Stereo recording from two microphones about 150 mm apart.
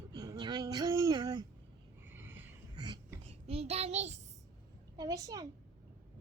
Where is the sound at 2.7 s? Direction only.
30° right (ahead or behind).